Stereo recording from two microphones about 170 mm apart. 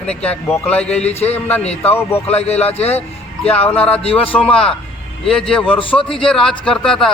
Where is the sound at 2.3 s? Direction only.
40° left (ahead or behind).